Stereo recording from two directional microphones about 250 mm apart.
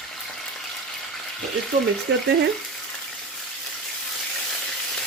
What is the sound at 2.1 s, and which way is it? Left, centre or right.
Speech, right.